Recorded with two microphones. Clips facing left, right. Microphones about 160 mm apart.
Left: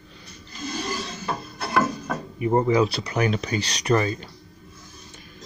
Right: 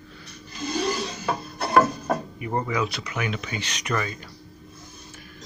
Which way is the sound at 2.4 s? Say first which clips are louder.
Left 12 dB; 25° left (ahead or behind).